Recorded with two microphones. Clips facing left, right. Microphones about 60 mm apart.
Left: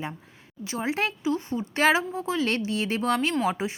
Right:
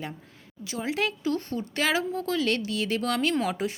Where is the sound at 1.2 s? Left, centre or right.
Centre.